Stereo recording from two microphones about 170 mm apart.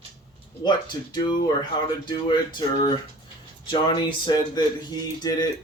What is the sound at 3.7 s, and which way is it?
Speech, 25° left (ahead or behind).